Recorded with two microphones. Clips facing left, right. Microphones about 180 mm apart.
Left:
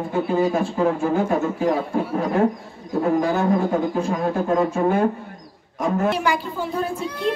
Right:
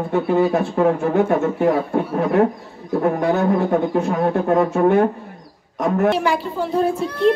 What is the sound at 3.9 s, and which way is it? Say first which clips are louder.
Speech: right 3 dB; 70° right (ahead or behind).